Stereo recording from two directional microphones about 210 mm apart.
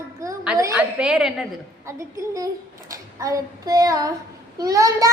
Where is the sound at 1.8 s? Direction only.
15° right (ahead or behind).